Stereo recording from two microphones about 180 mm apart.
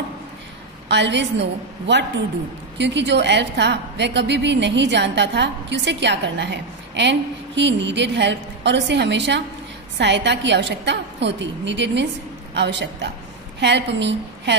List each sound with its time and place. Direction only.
0.8 s a woman's voice: 75° right (ahead or behind)